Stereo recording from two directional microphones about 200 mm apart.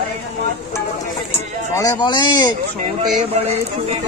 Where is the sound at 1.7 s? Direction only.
20° left (ahead or behind).